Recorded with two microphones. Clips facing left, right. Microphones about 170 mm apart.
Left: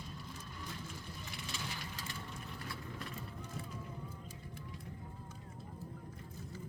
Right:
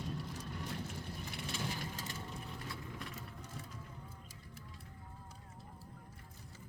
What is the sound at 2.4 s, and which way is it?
Vehicle, 20° right (ahead or behind).